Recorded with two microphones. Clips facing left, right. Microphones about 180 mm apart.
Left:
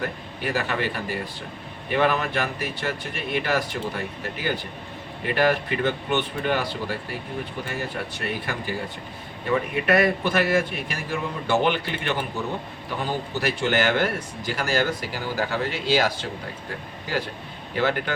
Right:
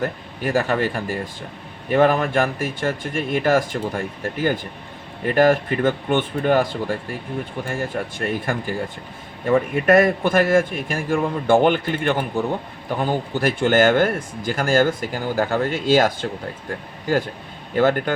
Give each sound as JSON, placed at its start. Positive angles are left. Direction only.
{"t": 0.0, "sound": "speech", "side_deg": -45}